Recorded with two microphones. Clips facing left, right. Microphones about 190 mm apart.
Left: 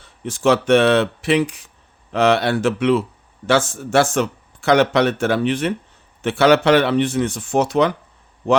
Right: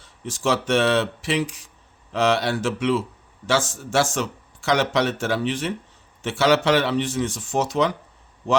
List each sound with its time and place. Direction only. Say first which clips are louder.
0.0 s speech: left 7 dB; 60° left (ahead or behind)